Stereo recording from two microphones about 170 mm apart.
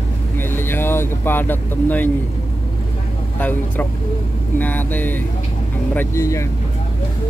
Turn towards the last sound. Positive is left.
turn(degrees=15)  # may be behind; listen again after turning